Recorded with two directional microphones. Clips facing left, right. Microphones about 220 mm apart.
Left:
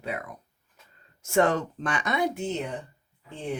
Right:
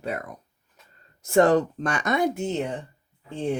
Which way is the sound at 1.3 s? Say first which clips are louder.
Right 5 dB; 35° right (ahead or behind).